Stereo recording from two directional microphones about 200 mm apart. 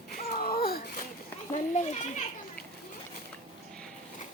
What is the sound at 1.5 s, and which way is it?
Speech, 40° left (ahead or behind).